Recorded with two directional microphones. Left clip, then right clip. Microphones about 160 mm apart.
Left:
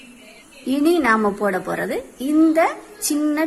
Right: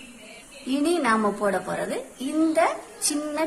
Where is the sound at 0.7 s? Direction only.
25° left (ahead or behind).